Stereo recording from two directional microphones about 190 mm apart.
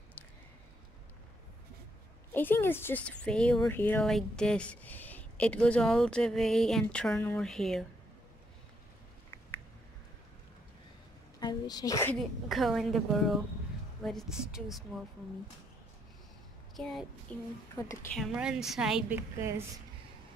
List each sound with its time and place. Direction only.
2.3 s speech: 10° left (ahead or behind)
11.3 s a woman's voice: 20° left (ahead or behind)
12.2 s speech: centre (ahead or behind)
16.7 s a sound: centre (ahead or behind)
17.3 s a woman's voice: 5° left (ahead or behind)
18.1 s speech: centre (ahead or behind)